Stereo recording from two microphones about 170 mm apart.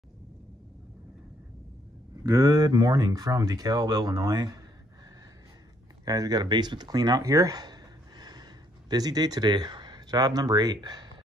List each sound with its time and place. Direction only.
2.2 s speech: 20° right (ahead or behind)
6.0 s speech: 20° right (ahead or behind)